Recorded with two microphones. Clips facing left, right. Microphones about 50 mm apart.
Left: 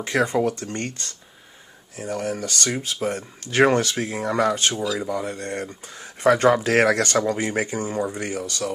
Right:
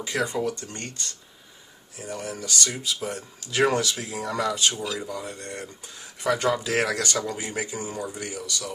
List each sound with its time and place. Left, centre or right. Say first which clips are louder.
0.0 s speech: left 5 dB; left